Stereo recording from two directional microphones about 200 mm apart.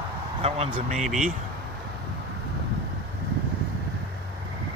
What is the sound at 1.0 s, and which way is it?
Speech, centre (ahead or behind).